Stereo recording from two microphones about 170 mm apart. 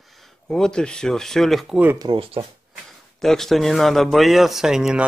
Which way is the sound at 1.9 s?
25° right (ahead or behind).